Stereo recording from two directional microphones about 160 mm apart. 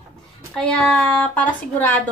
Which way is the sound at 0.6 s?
5° left (ahead or behind).